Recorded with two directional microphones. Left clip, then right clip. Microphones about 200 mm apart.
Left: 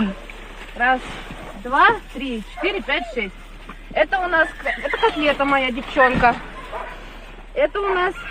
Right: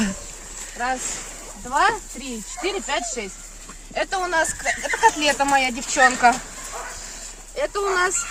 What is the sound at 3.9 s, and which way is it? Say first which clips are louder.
Speech: left 4 dB; 5° right (ahead or behind).